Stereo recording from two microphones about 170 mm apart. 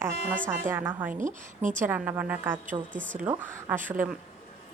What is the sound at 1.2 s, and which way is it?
Speech, 50° right (ahead or behind).